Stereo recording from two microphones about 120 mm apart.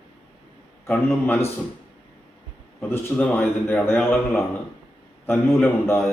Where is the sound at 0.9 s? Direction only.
10° left (ahead or behind).